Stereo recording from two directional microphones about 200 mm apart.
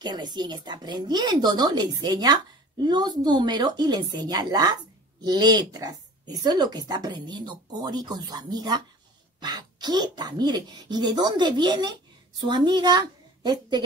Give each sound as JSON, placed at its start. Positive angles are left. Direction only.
{"t": 0.0, "sound": "a woman's voice", "side_deg": -20}